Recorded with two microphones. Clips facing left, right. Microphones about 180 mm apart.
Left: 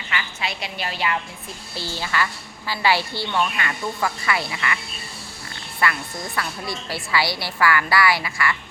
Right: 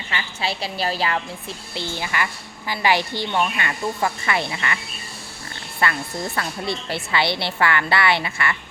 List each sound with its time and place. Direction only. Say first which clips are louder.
0.1 s a woman's voice: right 2 dB; 30° right (ahead or behind)
1.7 s a woman's voice: even; 20° right (ahead or behind)
5.8 s a woman's voice: right 1 dB; 30° right (ahead or behind)